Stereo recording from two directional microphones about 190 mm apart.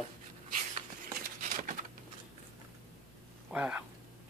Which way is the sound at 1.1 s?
45° right (ahead or behind).